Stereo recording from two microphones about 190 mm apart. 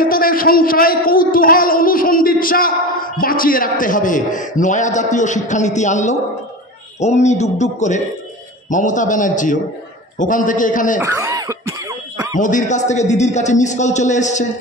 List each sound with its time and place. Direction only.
0.0 s a man's voice: 50° left (ahead or behind)
11.0 s cough: 15° right (ahead or behind)
12.4 s a man's voice: 40° left (ahead or behind)